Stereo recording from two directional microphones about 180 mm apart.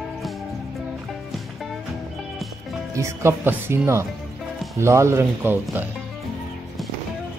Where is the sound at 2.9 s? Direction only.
15° right (ahead or behind).